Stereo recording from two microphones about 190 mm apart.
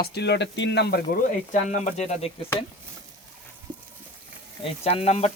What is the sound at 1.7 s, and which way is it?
Speech, 35° left (ahead or behind).